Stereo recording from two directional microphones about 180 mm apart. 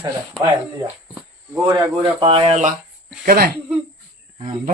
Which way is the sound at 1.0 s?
5° right (ahead or behind).